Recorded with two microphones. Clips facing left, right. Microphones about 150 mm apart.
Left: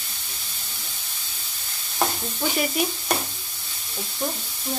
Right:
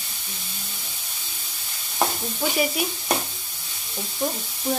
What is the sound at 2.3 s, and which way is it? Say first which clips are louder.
Stir: right 1 dB; 5° right (ahead or behind).